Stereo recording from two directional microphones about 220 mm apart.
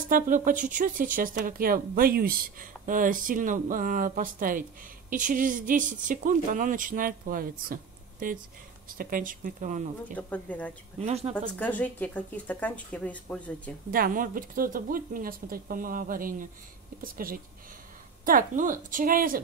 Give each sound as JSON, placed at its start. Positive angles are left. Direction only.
{"t": 0.1, "sound": "speech", "side_deg": -40}
{"t": 10.1, "sound": "speech", "side_deg": 5}
{"t": 11.0, "sound": "speech", "side_deg": -30}
{"t": 11.3, "sound": "speech", "side_deg": 5}
{"t": 13.9, "sound": "speech", "side_deg": -40}